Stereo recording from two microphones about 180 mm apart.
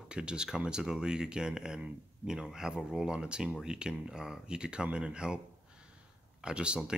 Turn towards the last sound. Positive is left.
turn(degrees=-5)  # may be behind; listen again after turning